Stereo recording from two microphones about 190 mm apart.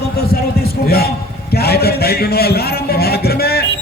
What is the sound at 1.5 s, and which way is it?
A man's voice, 55° left (ahead or behind).